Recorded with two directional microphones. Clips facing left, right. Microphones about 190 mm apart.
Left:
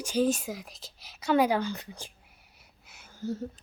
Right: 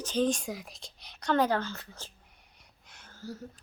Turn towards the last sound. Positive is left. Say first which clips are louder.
# left 8 dB
turn(degrees=25)  # may be behind; listen again after turning